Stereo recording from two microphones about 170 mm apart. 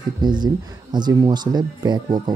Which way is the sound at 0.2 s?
25° right (ahead or behind).